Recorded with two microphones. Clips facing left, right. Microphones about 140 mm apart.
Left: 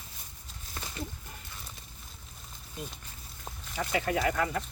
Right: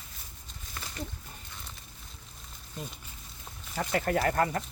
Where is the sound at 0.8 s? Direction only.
30° left (ahead or behind).